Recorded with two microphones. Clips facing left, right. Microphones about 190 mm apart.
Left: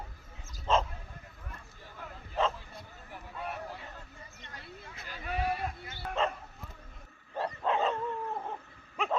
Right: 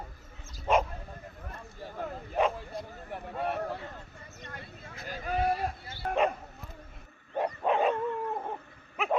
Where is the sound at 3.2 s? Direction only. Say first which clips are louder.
Right 7 dB; 55° right (ahead or behind); by 5.9 s 40° right (ahead or behind).